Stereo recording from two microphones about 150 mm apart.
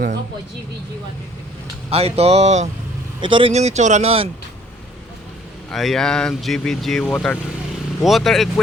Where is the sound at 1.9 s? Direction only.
40° right (ahead or behind).